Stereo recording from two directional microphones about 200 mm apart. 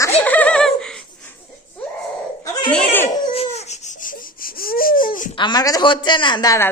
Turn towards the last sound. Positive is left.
turn(degrees=15)  # may be behind; listen again after turning